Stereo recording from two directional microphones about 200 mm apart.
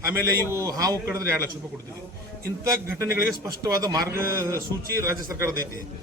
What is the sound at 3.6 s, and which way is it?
A man's voice, 20° right (ahead or behind).